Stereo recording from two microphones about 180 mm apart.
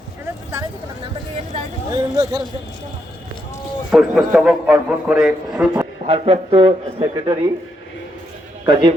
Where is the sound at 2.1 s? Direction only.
20° right (ahead or behind).